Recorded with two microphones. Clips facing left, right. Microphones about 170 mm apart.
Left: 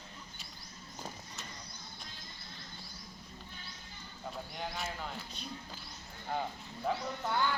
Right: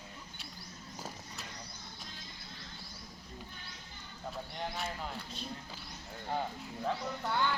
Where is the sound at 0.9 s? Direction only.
5° right (ahead or behind).